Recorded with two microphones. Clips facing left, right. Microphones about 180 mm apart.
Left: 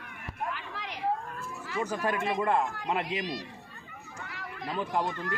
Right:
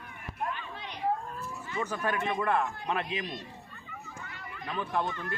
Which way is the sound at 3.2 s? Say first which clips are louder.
Left 3 dB; 90° left.